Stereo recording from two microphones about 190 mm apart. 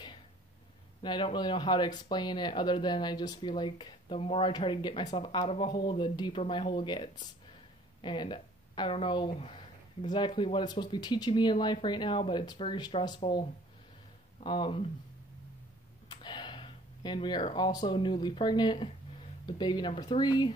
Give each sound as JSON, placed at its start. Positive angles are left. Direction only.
{"t": 1.0, "sound": "speech", "side_deg": 25}
{"t": 16.1, "sound": "speech", "side_deg": 25}